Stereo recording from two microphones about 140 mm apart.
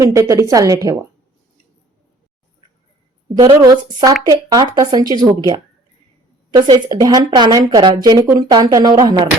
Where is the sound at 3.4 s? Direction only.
30° right (ahead or behind).